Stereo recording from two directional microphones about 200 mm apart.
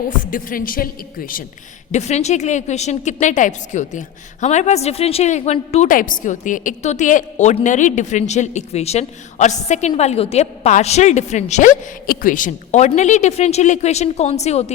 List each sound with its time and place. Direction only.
0.2 s speech: 45° left (ahead or behind)
1.9 s a woman's voice: 35° left (ahead or behind)